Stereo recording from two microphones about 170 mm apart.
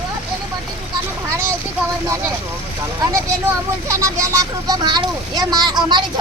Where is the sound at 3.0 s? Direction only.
20° right (ahead or behind).